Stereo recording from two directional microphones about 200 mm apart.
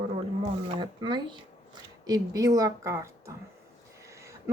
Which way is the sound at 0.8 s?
25° right (ahead or behind).